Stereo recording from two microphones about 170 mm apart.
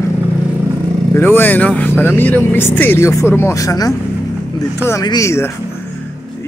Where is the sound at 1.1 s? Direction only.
10° left (ahead or behind).